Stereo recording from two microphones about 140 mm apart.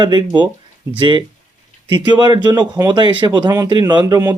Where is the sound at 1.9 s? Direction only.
35° right (ahead or behind).